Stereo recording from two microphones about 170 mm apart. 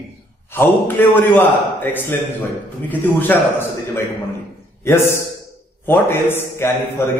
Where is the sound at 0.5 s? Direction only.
15° left (ahead or behind).